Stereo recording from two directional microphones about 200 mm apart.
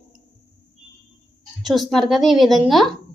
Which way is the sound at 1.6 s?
Centre (ahead or behind).